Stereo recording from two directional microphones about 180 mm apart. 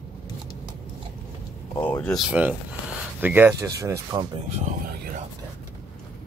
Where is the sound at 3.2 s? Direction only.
10° right (ahead or behind).